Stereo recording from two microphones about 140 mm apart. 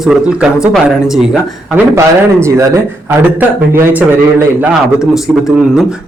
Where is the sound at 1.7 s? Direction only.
20° right (ahead or behind).